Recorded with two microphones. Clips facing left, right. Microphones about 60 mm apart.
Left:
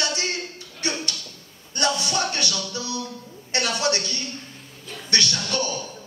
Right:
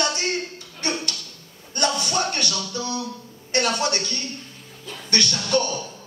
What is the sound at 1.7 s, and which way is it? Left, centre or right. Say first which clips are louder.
Speech: right 1 dB; right.